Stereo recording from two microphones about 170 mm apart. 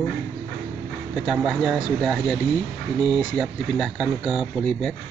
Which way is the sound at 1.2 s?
5° right (ahead or behind).